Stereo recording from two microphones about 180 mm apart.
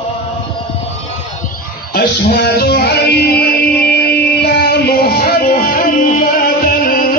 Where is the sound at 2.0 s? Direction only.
60° left (ahead or behind).